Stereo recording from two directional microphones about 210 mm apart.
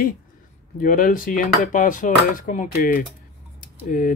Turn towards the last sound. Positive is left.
turn(degrees=40)  # may be behind; listen again after turning